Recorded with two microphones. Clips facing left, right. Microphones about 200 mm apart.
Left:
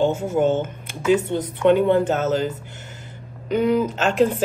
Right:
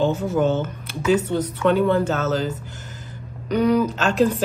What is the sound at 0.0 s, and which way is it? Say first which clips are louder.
Speech: left 1 dB; 15° left (ahead or behind).